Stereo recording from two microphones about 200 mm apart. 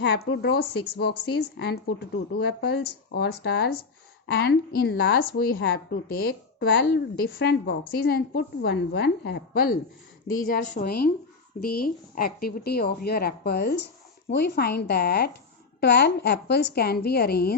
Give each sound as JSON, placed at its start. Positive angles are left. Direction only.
{"t": 0.3, "sound": "speech", "side_deg": 60}
{"t": 6.7, "sound": "speech", "side_deg": 60}